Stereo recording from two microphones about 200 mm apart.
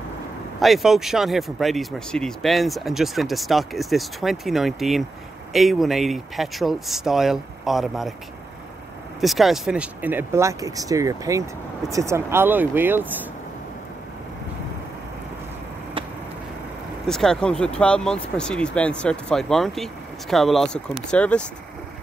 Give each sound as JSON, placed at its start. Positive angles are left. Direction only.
{"t": 0.6, "sound": "speech", "side_deg": 0}
{"t": 9.2, "sound": "speech", "side_deg": 0}
{"t": 17.0, "sound": "speech", "side_deg": 0}